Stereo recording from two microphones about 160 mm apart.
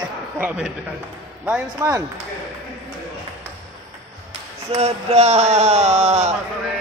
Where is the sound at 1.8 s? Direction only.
20° right (ahead or behind).